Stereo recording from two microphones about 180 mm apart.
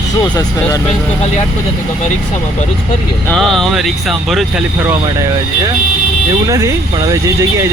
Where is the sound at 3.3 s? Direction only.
Centre (ahead or behind).